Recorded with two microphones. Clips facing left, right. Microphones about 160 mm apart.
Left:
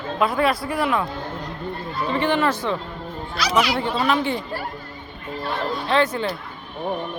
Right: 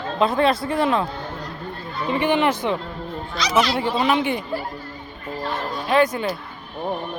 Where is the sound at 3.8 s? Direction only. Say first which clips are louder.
Right 1 dB; 15° right (ahead or behind).